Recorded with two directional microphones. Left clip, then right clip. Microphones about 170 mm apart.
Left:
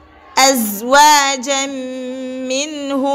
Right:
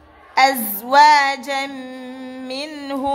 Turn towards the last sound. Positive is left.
turn(degrees=25)  # may be behind; listen again after turning